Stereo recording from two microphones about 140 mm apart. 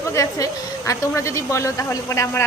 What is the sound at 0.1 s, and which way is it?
A man's voice, 20° left (ahead or behind).